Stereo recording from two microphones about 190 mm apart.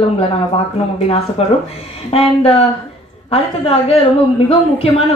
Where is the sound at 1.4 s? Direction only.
35° left (ahead or behind).